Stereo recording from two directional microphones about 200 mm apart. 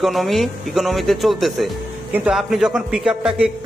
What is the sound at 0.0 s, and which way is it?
A man's voice, centre (ahead or behind).